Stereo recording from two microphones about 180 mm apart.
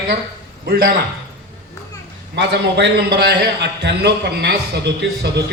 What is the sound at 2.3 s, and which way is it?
A man's voice, 75° right (ahead or behind).